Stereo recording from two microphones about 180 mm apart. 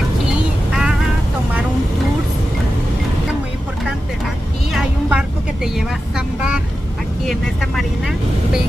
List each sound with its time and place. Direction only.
0.7 s music: 5° right (ahead or behind)
4.7 s vehicle: 5° right (ahead or behind)